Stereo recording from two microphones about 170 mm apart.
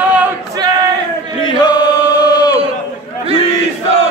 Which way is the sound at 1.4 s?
25° left (ahead or behind).